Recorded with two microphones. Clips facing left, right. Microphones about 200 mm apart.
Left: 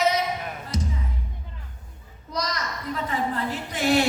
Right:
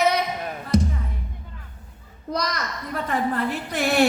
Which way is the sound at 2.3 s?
60° right (ahead or behind).